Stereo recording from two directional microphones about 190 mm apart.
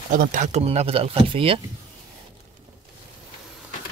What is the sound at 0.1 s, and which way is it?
Speech, 45° right (ahead or behind).